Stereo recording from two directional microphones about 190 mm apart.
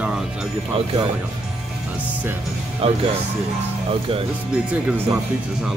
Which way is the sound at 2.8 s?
30° right (ahead or behind).